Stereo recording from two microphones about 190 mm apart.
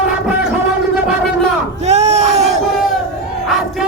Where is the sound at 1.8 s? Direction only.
35° right (ahead or behind).